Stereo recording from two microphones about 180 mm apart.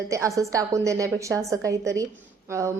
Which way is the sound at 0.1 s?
15° right (ahead or behind).